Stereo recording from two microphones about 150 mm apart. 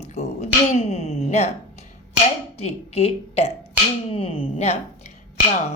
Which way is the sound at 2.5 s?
45° left (ahead or behind).